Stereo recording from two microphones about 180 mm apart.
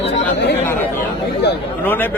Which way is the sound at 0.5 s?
10° left (ahead or behind).